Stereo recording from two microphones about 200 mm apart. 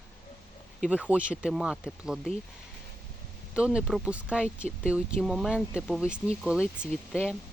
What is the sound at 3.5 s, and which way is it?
Speech, 5° right (ahead or behind).